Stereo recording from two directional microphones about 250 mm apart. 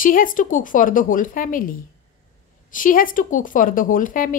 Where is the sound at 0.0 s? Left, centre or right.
Left.